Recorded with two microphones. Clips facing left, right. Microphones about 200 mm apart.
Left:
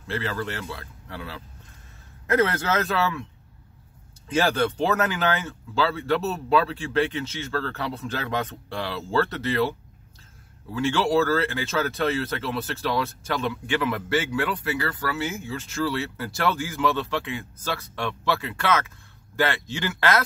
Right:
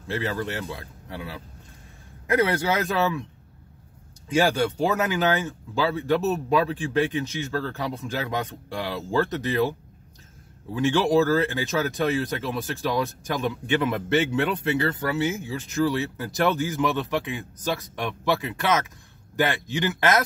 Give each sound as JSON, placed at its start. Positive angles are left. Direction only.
{"t": 0.1, "sound": "speech", "side_deg": -15}
{"t": 4.3, "sound": "speech", "side_deg": -10}